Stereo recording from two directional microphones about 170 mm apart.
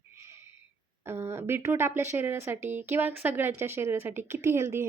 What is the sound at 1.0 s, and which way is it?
Speech, 15° right (ahead or behind).